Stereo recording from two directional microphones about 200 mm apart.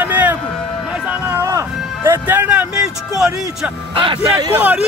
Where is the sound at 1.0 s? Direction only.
10° right (ahead or behind).